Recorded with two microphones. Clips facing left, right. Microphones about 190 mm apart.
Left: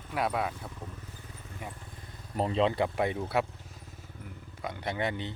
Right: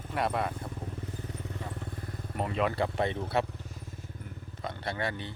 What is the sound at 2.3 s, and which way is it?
Speech, 30° left (ahead or behind).